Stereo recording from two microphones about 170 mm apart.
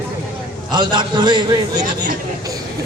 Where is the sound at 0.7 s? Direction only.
25° right (ahead or behind).